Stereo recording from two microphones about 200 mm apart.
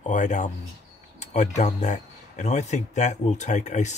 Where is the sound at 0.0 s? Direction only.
35° left (ahead or behind).